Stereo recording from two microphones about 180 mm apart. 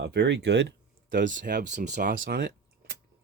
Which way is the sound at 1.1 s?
50° right (ahead or behind).